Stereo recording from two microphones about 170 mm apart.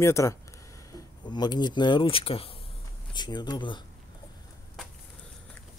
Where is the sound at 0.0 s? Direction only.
15° left (ahead or behind).